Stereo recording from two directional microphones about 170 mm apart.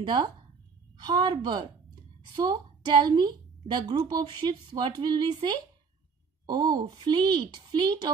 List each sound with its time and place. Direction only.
0.0 s a woman's voice: 25° right (ahead or behind)